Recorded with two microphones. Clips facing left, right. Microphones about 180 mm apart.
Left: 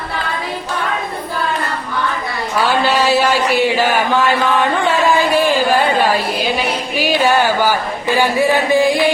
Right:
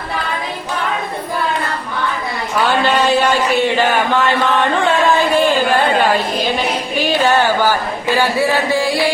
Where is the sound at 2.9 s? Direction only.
5° left (ahead or behind).